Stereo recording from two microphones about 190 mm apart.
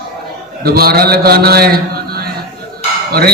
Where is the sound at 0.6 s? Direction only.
55° right (ahead or behind).